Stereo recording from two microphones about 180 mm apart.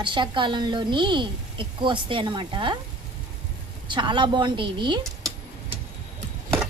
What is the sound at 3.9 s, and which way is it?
A woman's voice, 25° right (ahead or behind).